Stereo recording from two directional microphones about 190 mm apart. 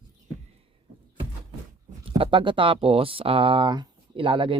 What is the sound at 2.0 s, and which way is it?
Speech, 30° right (ahead or behind).